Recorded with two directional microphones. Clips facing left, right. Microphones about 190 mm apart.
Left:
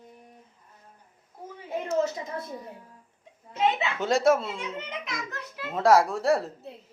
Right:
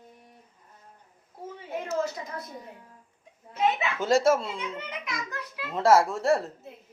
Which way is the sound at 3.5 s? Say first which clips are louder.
Even; 25° left (ahead or behind).